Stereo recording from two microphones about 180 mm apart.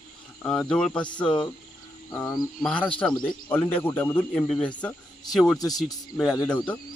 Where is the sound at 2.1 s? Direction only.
15° left (ahead or behind); by 5.6 s centre (ahead or behind).